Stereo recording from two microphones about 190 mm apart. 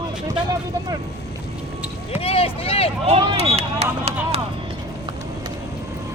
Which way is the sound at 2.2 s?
30° left (ahead or behind).